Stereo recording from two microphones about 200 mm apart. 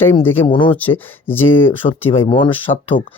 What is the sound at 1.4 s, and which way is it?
Speech, 25° left (ahead or behind).